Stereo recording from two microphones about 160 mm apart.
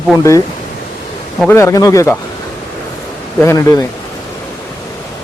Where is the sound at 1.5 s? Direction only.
15° left (ahead or behind).